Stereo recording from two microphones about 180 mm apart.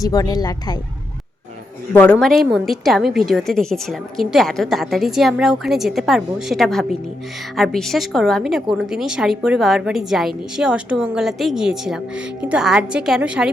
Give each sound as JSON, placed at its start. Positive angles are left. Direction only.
{"t": 0.0, "sound": "speech", "side_deg": 20}
{"t": 1.9, "sound": "a woman's voice", "side_deg": 10}